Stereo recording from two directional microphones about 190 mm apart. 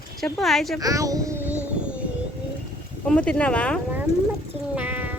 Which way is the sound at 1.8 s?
5° right (ahead or behind).